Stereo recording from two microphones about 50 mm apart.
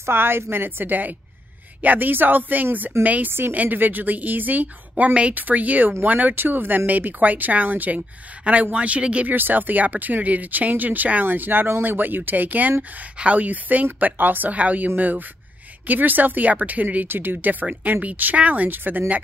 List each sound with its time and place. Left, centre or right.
0.0 s a woman's voice: right
3.3 s a woman's voice: right
3.5 s speech: right
8.7 s speech: right
9.3 s speech: right